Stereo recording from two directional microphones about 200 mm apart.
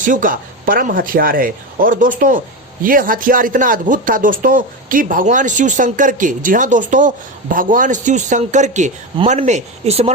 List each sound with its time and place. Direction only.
0.0 s speech: 40° right (ahead or behind)